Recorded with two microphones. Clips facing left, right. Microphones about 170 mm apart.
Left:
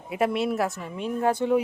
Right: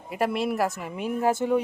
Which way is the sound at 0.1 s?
Centre (ahead or behind).